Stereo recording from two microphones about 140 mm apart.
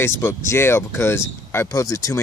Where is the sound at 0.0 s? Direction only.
20° left (ahead or behind).